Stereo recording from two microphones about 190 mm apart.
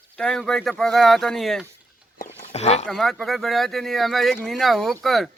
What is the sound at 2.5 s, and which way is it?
Speech, 35° left (ahead or behind).